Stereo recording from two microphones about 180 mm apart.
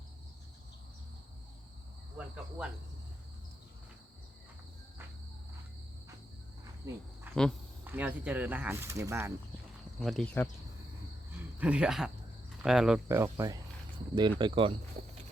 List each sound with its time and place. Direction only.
2.1 s cricket: 5° right (ahead or behind)
7.3 s insect: 10° right (ahead or behind)
7.9 s speech: 10° right (ahead or behind)
10.0 s speech: centre (ahead or behind)
11.6 s speech: 5° right (ahead or behind)
13.1 s speech: 15° right (ahead or behind)